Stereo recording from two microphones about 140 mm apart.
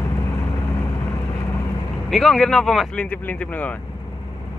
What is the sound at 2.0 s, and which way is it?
Speech, 5° left (ahead or behind).